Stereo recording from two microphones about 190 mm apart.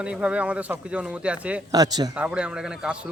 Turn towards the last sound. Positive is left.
turn(degrees=-5)  # may be behind; listen again after turning